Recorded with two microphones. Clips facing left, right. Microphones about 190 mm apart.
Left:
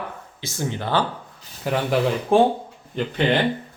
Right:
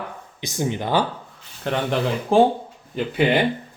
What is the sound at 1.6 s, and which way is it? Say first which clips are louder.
Speech: left 1 dB; 5° left (ahead or behind).